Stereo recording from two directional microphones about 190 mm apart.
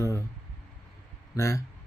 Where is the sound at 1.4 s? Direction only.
15° left (ahead or behind).